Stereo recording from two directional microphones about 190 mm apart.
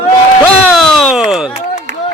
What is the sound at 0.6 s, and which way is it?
Speech, centre (ahead or behind).